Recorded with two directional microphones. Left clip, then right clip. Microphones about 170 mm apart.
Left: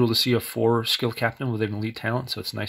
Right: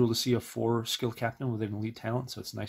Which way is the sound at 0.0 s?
15° left (ahead or behind).